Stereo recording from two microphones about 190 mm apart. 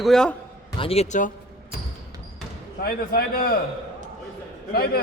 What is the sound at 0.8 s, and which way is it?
Speech, 30° left (ahead or behind).